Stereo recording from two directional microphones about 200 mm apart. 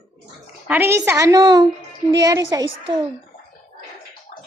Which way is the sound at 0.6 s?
10° right (ahead or behind).